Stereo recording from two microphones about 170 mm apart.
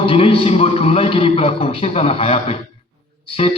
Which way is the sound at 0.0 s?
30° left (ahead or behind).